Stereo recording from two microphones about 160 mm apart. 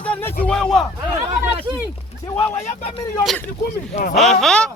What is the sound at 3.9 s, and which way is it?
Speech, 45° left (ahead or behind).